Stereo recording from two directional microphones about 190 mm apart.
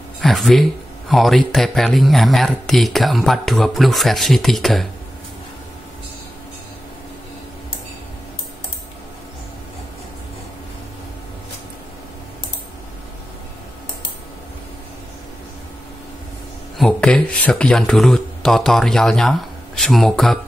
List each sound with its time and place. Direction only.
0.2 s speech: centre (ahead or behind)
16.7 s speech: 5° left (ahead or behind)